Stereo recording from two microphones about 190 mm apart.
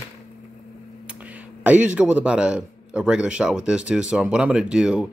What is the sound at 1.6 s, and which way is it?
A man's voice, 10° right (ahead or behind).